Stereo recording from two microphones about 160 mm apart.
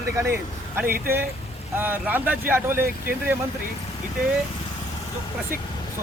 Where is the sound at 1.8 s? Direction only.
10° right (ahead or behind).